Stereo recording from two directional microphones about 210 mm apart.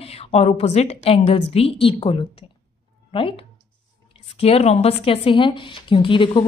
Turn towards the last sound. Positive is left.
turn(degrees=25)  # may be behind; listen again after turning